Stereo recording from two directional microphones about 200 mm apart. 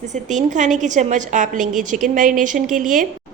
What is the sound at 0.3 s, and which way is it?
A woman's voice, 40° right (ahead or behind).